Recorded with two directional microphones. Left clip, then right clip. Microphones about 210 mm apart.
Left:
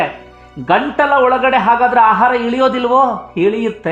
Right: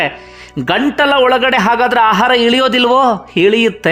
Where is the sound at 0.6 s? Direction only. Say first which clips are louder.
Even; 20° right (ahead or behind).